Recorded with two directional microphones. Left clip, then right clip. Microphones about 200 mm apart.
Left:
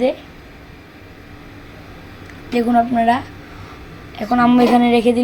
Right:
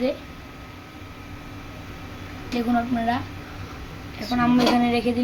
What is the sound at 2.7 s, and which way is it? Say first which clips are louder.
Speech: left 9 dB; 25° left (ahead or behind).